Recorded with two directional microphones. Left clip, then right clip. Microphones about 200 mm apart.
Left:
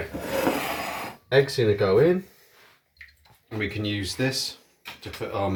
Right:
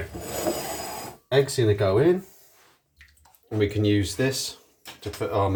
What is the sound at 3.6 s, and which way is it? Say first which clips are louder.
Speech: right 6 dB; 50° right (ahead or behind).